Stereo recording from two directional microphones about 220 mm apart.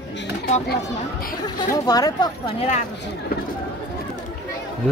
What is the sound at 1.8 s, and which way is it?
Speech, 15° left (ahead or behind).